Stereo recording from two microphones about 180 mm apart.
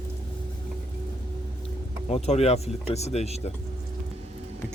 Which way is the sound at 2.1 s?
35° left (ahead or behind).